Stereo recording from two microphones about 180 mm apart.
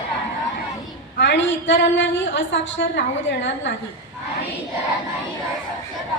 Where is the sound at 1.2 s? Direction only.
85° left.